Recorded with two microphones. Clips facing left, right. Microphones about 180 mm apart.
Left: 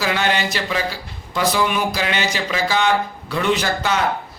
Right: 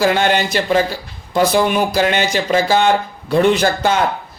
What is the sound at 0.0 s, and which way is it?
Speech, 50° right (ahead or behind).